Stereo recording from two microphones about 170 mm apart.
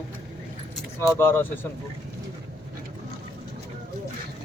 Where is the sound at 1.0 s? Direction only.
10° left (ahead or behind).